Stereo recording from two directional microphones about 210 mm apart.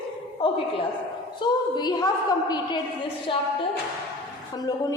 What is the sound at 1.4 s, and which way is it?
Speech, 20° left (ahead or behind).